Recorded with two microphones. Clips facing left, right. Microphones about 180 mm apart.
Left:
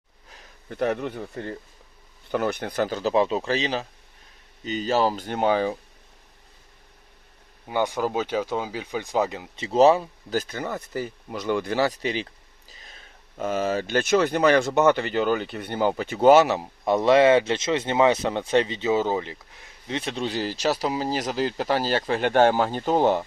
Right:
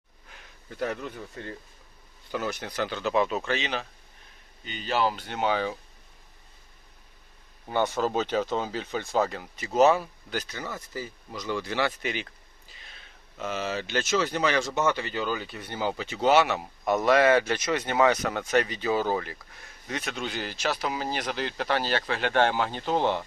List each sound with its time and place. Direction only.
0.7 s a man's voice: 60° left (ahead or behind)
2.3 s speech: 60° left (ahead or behind); by 5.7 s 40° left (ahead or behind)
7.7 s speech: 10° left (ahead or behind); by 23.2 s 45° left (ahead or behind)